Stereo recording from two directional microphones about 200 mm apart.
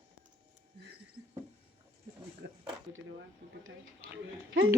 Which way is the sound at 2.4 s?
60° right (ahead or behind).